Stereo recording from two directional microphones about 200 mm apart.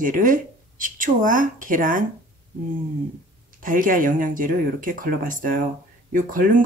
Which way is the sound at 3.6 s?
45° right (ahead or behind).